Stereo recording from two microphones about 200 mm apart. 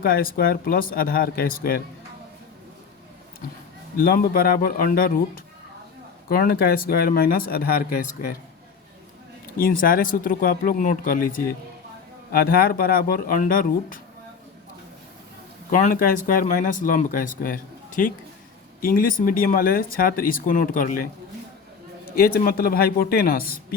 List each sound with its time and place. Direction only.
0.0 s speech: 45° left (ahead or behind)
3.9 s speech: 45° left (ahead or behind)
9.6 s speech: 45° left (ahead or behind)
15.7 s speech: 45° left (ahead or behind)
22.2 s speech: 50° left (ahead or behind)